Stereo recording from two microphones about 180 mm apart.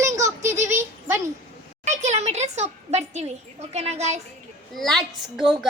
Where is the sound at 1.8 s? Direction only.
40° right (ahead or behind).